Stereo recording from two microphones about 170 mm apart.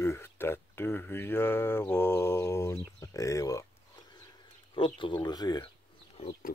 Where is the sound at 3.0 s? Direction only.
20° left (ahead or behind).